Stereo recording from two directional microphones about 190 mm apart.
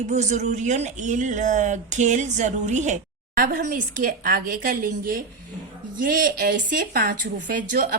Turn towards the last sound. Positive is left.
turn(degrees=-45)  # may be behind; listen again after turning